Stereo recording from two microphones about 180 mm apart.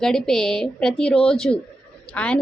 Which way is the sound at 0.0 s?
5° left (ahead or behind).